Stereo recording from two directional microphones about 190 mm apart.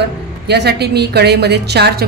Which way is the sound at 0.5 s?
60° right (ahead or behind).